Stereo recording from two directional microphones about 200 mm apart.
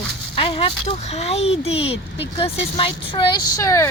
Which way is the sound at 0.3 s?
25° left (ahead or behind).